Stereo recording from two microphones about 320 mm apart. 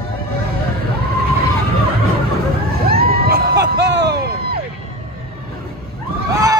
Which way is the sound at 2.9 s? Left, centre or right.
Right.